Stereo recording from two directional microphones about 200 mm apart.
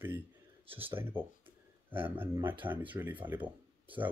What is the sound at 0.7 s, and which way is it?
Speech, 25° right (ahead or behind).